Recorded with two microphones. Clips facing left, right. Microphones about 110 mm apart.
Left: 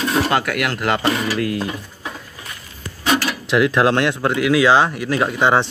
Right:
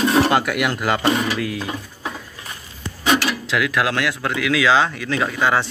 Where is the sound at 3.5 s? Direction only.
25° left (ahead or behind).